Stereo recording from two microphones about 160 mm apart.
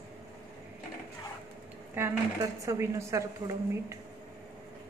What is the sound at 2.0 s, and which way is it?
Speech, 15° right (ahead or behind).